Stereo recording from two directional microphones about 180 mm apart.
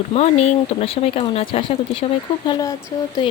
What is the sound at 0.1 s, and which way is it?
Speech, 35° left (ahead or behind).